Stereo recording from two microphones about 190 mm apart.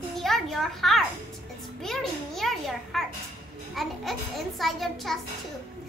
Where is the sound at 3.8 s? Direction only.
Centre (ahead or behind).